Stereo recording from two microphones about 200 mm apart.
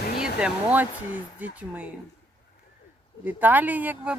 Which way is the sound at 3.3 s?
10° right (ahead or behind).